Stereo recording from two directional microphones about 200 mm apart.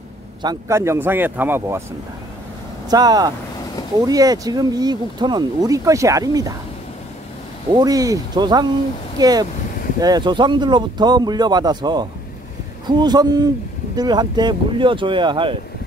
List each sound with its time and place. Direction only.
0.4 s speech: 15° right (ahead or behind)
2.9 s speech: 20° right (ahead or behind)
7.7 s speech: 20° right (ahead or behind)